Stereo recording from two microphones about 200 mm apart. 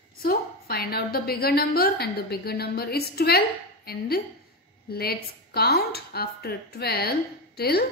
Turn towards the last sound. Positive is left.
turn(degrees=50)  # may be behind; listen again after turning